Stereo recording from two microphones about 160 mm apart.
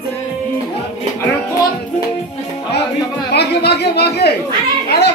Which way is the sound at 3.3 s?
90° left.